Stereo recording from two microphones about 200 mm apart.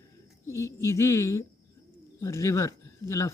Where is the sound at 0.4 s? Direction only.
15° left (ahead or behind).